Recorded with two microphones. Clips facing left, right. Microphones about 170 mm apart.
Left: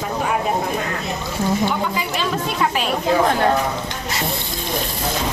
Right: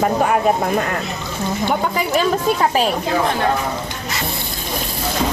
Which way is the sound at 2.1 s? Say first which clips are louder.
Right 5 dB; 40° right (ahead or behind).